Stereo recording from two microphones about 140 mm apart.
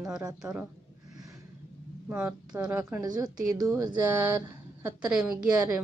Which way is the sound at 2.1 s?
10° right (ahead or behind).